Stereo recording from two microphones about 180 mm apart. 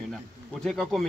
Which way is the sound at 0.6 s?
Centre (ahead or behind).